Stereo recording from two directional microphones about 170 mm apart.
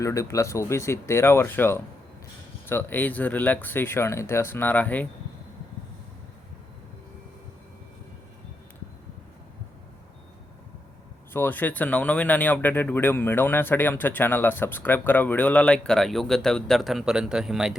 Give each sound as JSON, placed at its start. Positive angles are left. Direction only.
{"t": 0.0, "sound": "speech", "side_deg": 20}
{"t": 11.3, "sound": "speech", "side_deg": 10}